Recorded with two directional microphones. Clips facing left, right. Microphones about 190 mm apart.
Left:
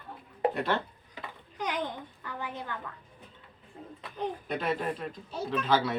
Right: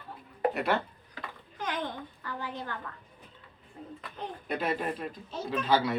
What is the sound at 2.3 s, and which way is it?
Speech, 20° left (ahead or behind).